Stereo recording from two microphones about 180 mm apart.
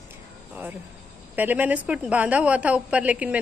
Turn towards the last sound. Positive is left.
turn(degrees=-5)  # may be behind; listen again after turning